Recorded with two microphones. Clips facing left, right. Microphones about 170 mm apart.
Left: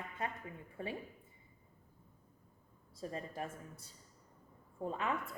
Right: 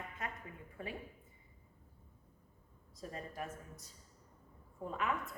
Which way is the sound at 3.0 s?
30° left (ahead or behind).